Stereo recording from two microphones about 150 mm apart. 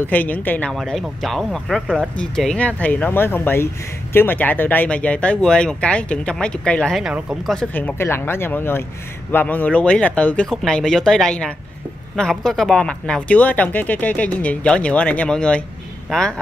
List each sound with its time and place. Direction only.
0.0 s speech: 10° left (ahead or behind)
0.7 s speech: centre (ahead or behind)